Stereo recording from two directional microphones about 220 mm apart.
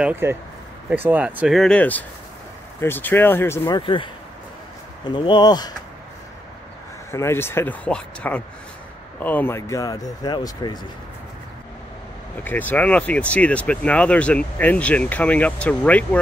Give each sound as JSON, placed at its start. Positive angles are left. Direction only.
{"t": 0.0, "sound": "speech", "side_deg": -10}
{"t": 7.1, "sound": "speech", "side_deg": 10}
{"t": 12.4, "sound": "speech", "side_deg": 5}